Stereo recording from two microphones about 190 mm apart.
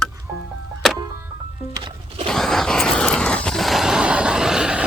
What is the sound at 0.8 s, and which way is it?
Music, centre (ahead or behind).